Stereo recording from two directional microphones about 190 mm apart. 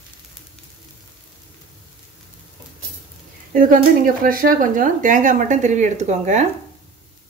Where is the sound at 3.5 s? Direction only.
50° right (ahead or behind).